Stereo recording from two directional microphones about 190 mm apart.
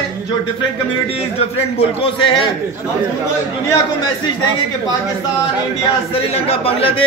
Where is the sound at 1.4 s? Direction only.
30° left (ahead or behind).